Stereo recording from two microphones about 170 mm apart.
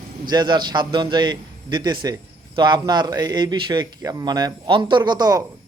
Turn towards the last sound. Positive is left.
turn(degrees=-20)  # may be behind; listen again after turning